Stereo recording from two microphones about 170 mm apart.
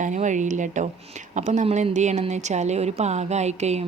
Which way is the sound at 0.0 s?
45° right (ahead or behind).